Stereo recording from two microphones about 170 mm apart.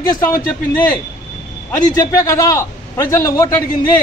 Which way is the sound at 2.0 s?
20° left (ahead or behind).